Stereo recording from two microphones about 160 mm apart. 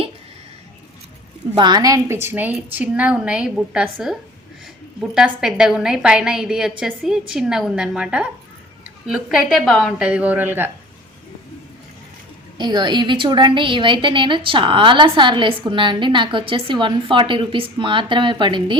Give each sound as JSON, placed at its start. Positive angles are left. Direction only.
{"t": 1.5, "sound": "a woman's voice", "side_deg": -25}
{"t": 12.5, "sound": "a woman's voice", "side_deg": -25}